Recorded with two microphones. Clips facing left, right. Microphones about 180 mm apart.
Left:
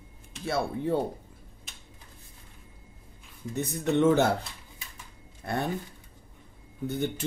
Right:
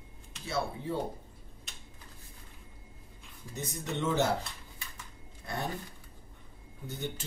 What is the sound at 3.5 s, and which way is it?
Speech, 60° left (ahead or behind).